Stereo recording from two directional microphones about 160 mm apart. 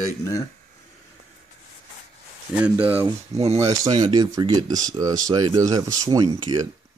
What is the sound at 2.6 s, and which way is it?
Speech, 10° right (ahead or behind).